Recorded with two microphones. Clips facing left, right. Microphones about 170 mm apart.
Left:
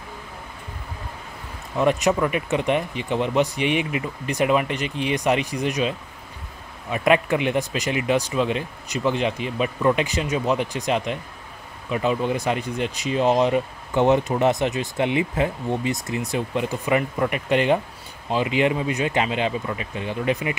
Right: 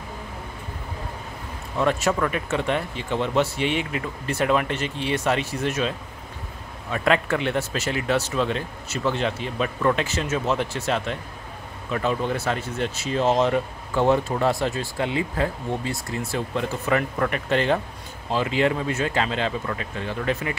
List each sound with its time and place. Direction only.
1.8 s speech: 15° left (ahead or behind)